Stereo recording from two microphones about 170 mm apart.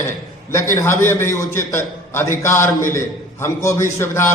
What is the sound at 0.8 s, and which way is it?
A man's voice, 15° left (ahead or behind).